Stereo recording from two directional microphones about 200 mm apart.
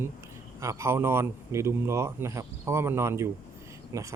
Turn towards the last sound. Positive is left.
turn(degrees=-15)  # may be behind; listen again after turning